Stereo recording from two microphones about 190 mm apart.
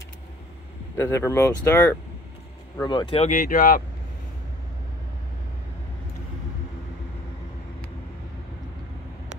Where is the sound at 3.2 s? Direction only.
45° left (ahead or behind).